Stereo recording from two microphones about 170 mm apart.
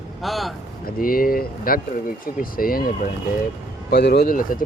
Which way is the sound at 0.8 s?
60° left (ahead or behind).